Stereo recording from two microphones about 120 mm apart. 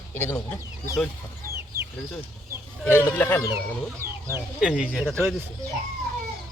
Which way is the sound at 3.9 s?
25° right (ahead or behind).